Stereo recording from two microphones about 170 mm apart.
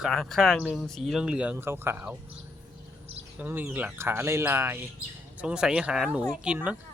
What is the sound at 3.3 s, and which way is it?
Speech, 10° right (ahead or behind).